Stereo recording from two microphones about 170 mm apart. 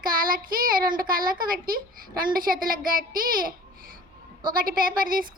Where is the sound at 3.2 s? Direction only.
55° right (ahead or behind).